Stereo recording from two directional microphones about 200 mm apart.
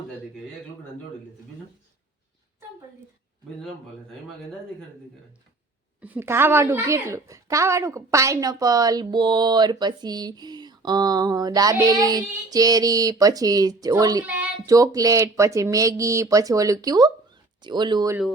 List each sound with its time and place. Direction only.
6.0 s a woman's voice: 10° right (ahead or behind)